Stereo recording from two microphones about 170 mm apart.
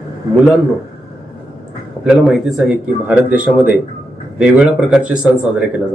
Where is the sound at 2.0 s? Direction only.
5° right (ahead or behind).